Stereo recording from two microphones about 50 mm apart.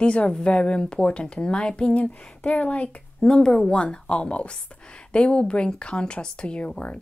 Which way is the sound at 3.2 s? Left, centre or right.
Centre.